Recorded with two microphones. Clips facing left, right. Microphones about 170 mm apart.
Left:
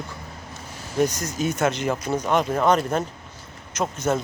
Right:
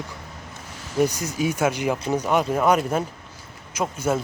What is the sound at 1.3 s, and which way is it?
Speech, 10° right (ahead or behind).